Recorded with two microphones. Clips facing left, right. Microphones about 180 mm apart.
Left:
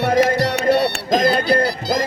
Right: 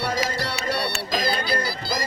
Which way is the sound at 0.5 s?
50° left (ahead or behind).